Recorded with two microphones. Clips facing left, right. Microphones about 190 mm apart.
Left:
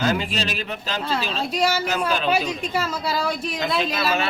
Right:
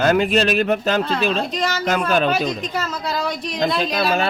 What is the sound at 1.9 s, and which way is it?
Speech, 55° right (ahead or behind).